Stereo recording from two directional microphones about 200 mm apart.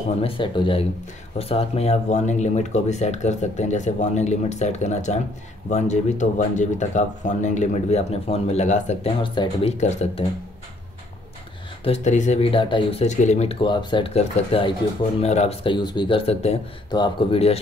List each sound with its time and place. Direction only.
0.2 s speech: 25° left (ahead or behind)
9.2 s speech: 25° left (ahead or behind)
11.8 s speech: 35° left (ahead or behind)